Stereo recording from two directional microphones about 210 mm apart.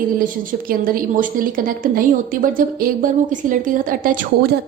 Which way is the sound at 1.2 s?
40° right (ahead or behind).